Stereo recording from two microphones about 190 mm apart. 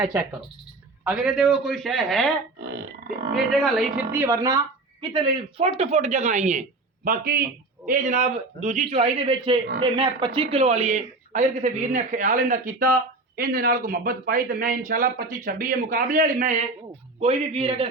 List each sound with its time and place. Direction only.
0.0 s a man's voice: 10° right (ahead or behind)
3.3 s a woman's voice: centre (ahead or behind); by 16.6 s 40° right (ahead or behind)
17.2 s a man's voice: 30° right (ahead or behind)